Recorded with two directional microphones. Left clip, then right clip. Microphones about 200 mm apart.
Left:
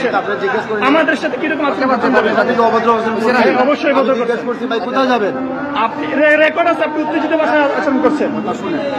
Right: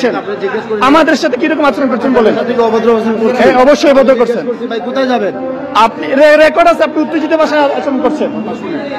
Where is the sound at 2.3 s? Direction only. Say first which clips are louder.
Right 1 dB; 25° right (ahead or behind).